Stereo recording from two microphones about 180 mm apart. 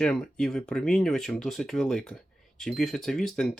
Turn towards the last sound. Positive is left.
turn(degrees=5)  # may be behind; listen again after turning